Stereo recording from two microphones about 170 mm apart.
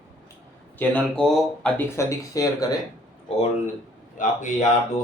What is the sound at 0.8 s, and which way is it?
Speech, 5° left (ahead or behind).